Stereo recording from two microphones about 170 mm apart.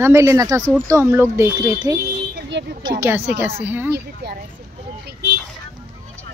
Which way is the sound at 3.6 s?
10° right (ahead or behind).